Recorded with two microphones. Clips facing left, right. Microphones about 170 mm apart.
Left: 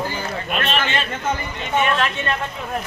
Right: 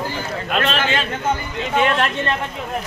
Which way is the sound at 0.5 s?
90° right.